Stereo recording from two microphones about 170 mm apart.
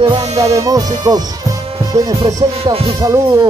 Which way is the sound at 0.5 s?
20° right (ahead or behind).